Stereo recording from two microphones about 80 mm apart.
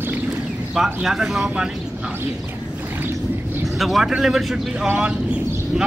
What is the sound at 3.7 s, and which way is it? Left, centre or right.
Speech, centre.